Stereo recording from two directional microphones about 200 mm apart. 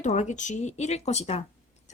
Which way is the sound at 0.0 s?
35° left (ahead or behind).